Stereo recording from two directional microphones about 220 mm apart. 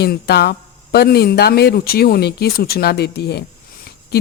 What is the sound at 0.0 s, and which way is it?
Speech, 45° left (ahead or behind).